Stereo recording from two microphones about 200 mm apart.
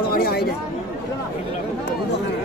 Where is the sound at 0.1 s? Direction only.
50° left (ahead or behind).